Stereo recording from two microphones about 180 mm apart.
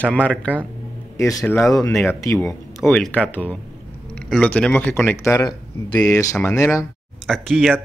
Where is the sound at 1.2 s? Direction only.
20° left (ahead or behind).